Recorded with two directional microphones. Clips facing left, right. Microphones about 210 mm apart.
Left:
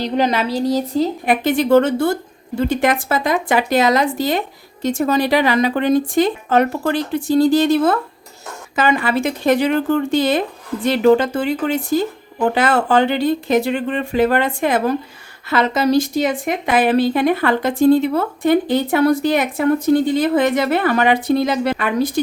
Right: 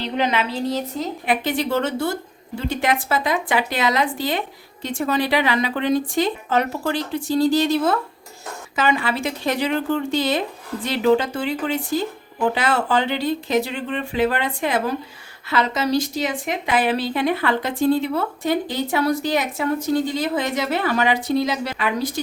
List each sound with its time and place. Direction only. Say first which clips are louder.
0.0 s a woman's voice: left 4 dB; 40° left (ahead or behind)
1.2 s a woman's voice: left 5 dB; 50° left (ahead or behind)